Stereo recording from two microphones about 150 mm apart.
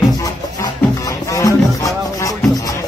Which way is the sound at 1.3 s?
20° left (ahead or behind).